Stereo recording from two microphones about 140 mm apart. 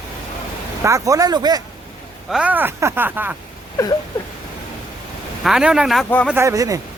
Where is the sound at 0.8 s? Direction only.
20° right (ahead or behind).